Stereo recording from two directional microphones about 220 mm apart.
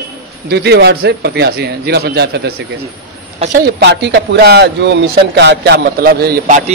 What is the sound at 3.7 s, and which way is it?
Speech, 50° right (ahead or behind).